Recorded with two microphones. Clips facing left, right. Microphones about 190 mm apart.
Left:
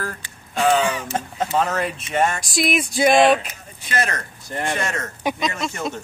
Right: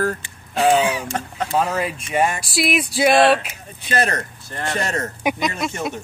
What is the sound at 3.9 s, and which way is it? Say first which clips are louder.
Speech: right 3 dB; 35° right (ahead or behind).